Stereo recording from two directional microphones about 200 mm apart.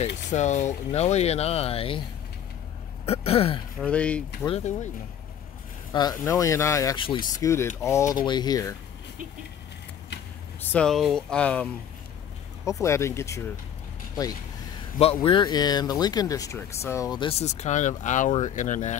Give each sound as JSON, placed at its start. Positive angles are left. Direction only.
{"t": 0.3, "sound": "speech", "side_deg": 35}
{"t": 3.1, "sound": "speech", "side_deg": 30}
{"t": 3.8, "sound": "speech", "side_deg": 5}
{"t": 4.5, "sound": "speech", "side_deg": 35}
{"t": 5.9, "sound": "speech", "side_deg": 20}
{"t": 10.6, "sound": "speech", "side_deg": 5}
{"t": 15.2, "sound": "speech", "side_deg": 20}